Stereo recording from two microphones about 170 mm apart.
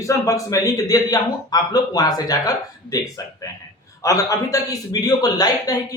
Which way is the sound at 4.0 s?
20° left (ahead or behind).